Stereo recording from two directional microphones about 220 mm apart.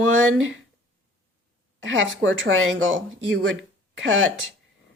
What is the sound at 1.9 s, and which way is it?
Speech, 60° right (ahead or behind).